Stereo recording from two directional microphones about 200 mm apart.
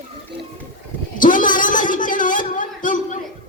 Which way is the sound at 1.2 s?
40° left (ahead or behind).